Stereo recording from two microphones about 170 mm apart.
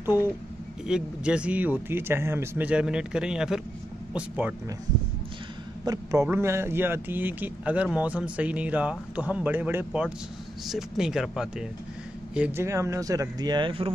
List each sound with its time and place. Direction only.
0.8 s speech: 5° right (ahead or behind)
5.9 s speech: 25° right (ahead or behind)